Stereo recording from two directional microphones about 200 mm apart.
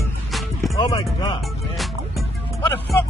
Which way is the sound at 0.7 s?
25° left (ahead or behind).